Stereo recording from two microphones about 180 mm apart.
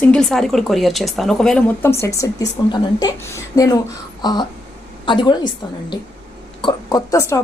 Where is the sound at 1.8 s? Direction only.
15° left (ahead or behind).